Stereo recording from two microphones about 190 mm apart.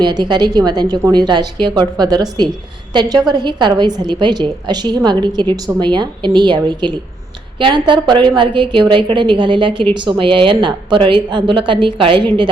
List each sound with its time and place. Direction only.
0.0 s a woman's voice: 20° right (ahead or behind)